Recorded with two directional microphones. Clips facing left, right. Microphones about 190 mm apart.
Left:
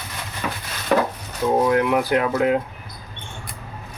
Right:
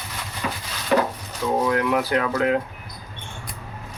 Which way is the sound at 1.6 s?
20° left (ahead or behind).